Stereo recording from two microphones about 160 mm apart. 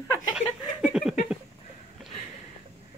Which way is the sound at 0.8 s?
Centre (ahead or behind).